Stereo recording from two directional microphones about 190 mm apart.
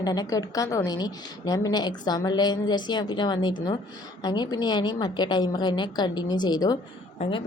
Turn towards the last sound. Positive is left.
turn(degrees=25)  # may be behind; listen again after turning